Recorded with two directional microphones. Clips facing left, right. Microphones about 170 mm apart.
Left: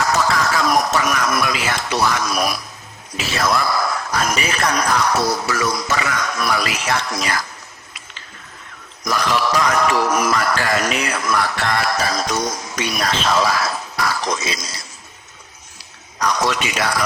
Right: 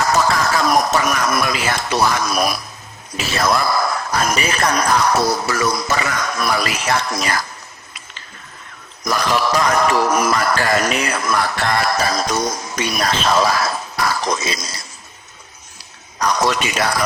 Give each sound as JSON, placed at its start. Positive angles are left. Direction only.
{"t": 0.0, "sound": "music", "side_deg": -40}
{"t": 3.2, "sound": "speech", "side_deg": -40}
{"t": 9.0, "sound": "speech", "side_deg": -40}
{"t": 16.1, "sound": "speech", "side_deg": -35}